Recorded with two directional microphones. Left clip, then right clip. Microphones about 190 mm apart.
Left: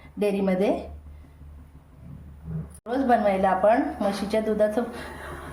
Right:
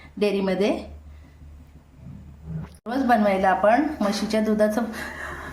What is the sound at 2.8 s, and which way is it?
A woman's voice, 5° left (ahead or behind).